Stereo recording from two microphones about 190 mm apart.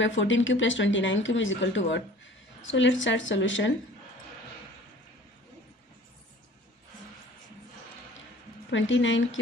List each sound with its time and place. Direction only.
0.0 s speech: 80° left
8.6 s speech: 80° left